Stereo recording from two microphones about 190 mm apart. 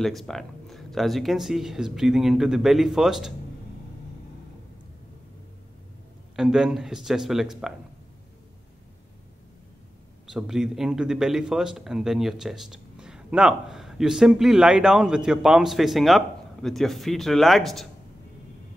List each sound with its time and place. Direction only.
0.0 s speech: centre (ahead or behind)
6.3 s speech: 5° right (ahead or behind)
10.3 s speech: 5° right (ahead or behind)